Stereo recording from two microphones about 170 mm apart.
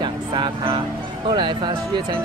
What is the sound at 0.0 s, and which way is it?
Vehicle, 25° right (ahead or behind).